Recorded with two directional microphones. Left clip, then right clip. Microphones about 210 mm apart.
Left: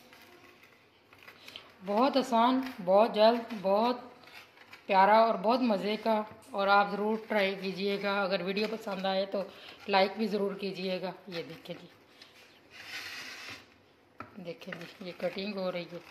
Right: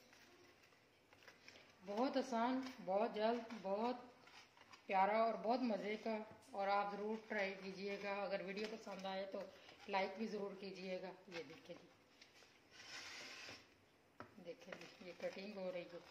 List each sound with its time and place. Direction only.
2.0 s a woman's voice: 25° left (ahead or behind)
15.0 s a woman's voice: 30° left (ahead or behind)